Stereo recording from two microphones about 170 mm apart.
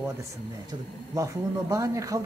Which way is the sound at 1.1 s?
20° right (ahead or behind).